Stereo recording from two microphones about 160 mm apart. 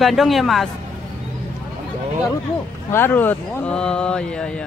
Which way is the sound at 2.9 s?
15° left (ahead or behind).